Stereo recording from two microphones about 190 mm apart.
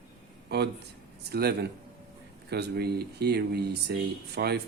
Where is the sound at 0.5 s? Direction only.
60° right (ahead or behind).